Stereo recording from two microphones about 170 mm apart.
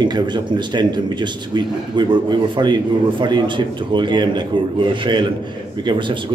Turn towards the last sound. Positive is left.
turn(degrees=-30)  # may be behind; listen again after turning